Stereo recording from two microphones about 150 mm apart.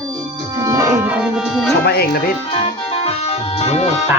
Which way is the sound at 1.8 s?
90° left.